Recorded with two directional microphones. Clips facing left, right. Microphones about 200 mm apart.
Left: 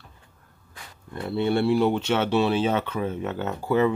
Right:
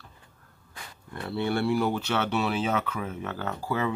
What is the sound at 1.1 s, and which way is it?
Speech, 20° left (ahead or behind).